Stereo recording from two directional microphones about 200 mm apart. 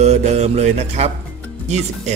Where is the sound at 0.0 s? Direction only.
35° right (ahead or behind).